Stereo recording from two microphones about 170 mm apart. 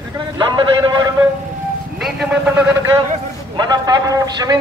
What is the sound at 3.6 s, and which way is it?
Speech, 25° right (ahead or behind).